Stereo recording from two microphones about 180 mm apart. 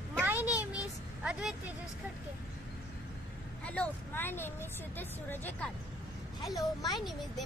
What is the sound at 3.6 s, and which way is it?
Speech, 5° left (ahead or behind).